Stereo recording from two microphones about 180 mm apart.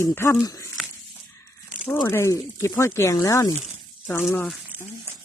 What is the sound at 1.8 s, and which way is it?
Speech, 15° left (ahead or behind).